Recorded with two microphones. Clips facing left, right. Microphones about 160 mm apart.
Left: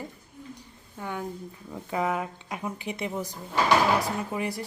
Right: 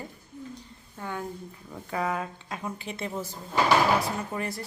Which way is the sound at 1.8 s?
20° left (ahead or behind).